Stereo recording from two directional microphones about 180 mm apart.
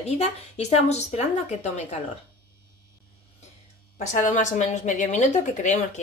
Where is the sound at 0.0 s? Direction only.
35° left (ahead or behind).